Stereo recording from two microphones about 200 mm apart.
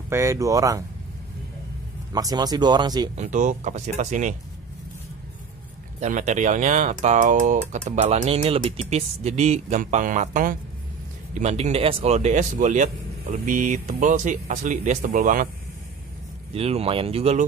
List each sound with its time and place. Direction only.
0.1 s speech: 15° right (ahead or behind)
2.1 s speech: 20° right (ahead or behind)
3.2 s speech: 40° right (ahead or behind)
5.9 s speech: 35° right (ahead or behind)
16.5 s speech: 30° right (ahead or behind)